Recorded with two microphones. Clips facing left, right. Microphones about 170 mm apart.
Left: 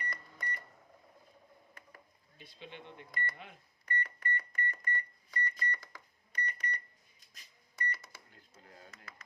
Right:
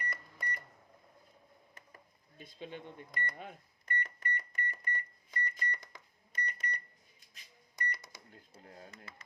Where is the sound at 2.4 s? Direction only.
45° right (ahead or behind).